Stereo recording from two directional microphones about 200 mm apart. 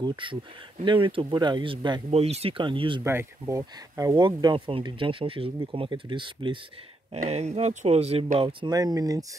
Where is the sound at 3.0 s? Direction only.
15° right (ahead or behind).